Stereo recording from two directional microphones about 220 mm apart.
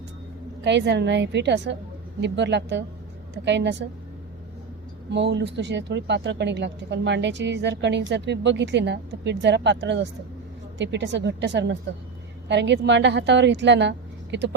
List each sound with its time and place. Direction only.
0.6 s speech: 50° right (ahead or behind)
5.1 s speech: 50° right (ahead or behind)